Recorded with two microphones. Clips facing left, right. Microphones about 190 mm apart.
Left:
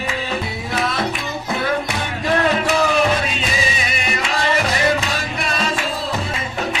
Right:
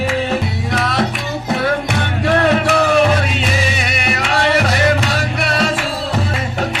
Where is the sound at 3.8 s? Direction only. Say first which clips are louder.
Right 3 dB; 70° right (ahead or behind).